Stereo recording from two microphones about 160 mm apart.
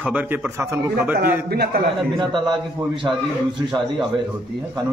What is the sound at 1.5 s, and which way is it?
Speech, 75° right (ahead or behind).